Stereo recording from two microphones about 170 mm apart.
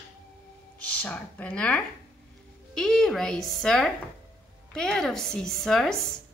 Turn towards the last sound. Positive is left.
turn(degrees=5)  # may be behind; listen again after turning